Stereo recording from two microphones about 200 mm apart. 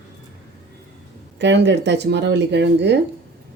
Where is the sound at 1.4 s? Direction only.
60° right (ahead or behind).